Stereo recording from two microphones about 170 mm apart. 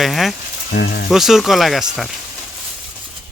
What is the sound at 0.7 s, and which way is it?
Speech, 65° left (ahead or behind).